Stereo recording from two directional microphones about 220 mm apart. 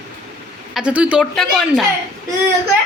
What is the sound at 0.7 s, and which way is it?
Speech, 5° right (ahead or behind).